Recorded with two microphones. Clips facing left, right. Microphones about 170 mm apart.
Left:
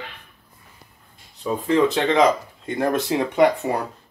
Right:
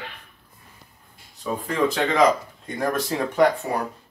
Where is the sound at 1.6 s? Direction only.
20° left (ahead or behind).